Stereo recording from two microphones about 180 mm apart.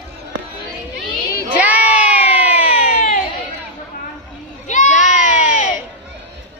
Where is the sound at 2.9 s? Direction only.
45° left (ahead or behind).